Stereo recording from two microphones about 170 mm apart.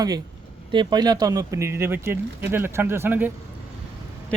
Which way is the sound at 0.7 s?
25° right (ahead or behind).